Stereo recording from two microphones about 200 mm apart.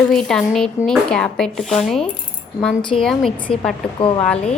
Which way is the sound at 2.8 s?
25° left (ahead or behind).